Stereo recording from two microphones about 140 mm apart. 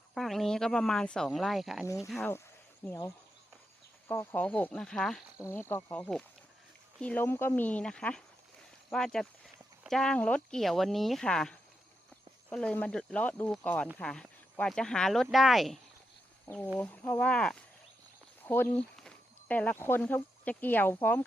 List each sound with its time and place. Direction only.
0.1 s speech: centre (ahead or behind)
4.1 s speech: 15° left (ahead or behind)
5.4 s speech: 15° left (ahead or behind); by 15.8 s centre (ahead or behind)
16.7 s speech: 10° left (ahead or behind)